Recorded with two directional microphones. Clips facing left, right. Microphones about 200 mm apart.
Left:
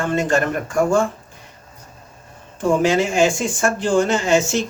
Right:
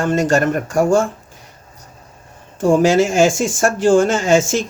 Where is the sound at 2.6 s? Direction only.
45° right (ahead or behind).